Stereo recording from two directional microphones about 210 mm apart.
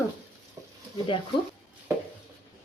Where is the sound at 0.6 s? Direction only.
15° right (ahead or behind).